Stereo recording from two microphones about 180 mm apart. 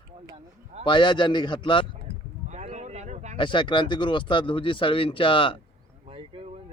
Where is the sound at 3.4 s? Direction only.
25° left (ahead or behind).